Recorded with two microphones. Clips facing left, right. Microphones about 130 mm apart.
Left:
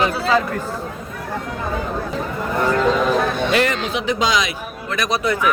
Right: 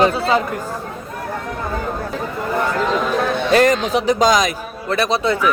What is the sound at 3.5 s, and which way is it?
Speech, 40° right (ahead or behind).